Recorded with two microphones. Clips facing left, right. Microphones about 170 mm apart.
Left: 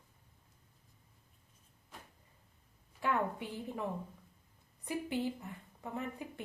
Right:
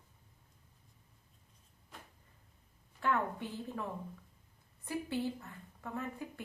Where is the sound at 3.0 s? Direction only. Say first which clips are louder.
Even; 15° left (ahead or behind).